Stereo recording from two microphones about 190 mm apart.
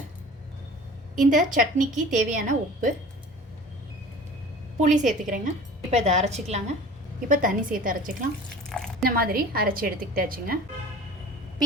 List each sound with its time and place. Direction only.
1.1 s a woman's voice: 40° right (ahead or behind)
4.8 s a woman's voice: 40° right (ahead or behind)
7.3 s a woman's voice: 45° right (ahead or behind)
8.7 s drip: 5° left (ahead or behind)
9.0 s a woman's voice: 50° right (ahead or behind)